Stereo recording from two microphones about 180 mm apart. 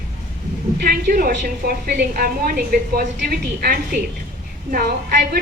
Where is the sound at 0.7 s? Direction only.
55° right (ahead or behind).